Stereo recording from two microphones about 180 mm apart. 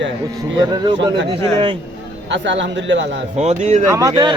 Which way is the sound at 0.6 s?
25° right (ahead or behind).